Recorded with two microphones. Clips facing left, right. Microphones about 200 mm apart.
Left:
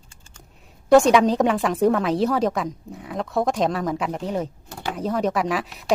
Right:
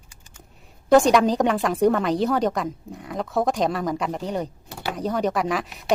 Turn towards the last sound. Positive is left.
turn(degrees=0)  # may be behind; listen again after turning